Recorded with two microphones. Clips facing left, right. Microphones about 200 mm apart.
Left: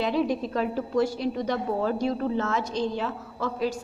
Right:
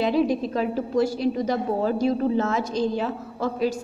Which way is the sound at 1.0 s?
40° right (ahead or behind).